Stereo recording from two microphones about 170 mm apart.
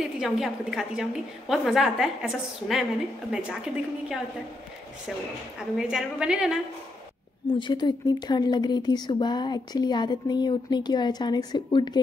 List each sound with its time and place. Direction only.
0.0 s a woman's voice: 5° right (ahead or behind)
5.6 s a woman's voice: 5° right (ahead or behind)
7.4 s speech: 30° left (ahead or behind)